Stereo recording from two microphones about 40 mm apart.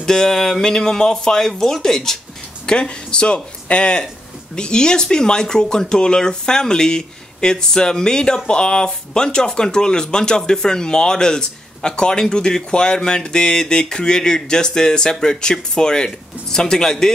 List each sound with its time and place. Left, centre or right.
0.0 s speech: centre